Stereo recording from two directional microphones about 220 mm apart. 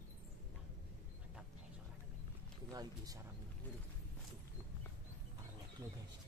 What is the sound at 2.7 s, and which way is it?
Speech, 15° right (ahead or behind).